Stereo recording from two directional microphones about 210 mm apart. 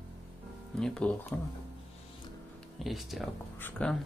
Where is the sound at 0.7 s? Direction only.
5° left (ahead or behind).